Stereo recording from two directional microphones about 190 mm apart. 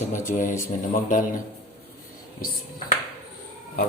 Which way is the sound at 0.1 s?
45° left (ahead or behind).